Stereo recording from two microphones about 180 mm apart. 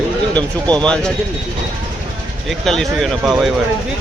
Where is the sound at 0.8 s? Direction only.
5° left (ahead or behind).